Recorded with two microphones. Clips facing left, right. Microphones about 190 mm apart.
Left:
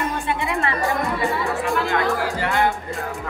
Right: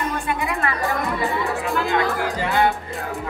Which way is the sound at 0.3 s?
25° left (ahead or behind).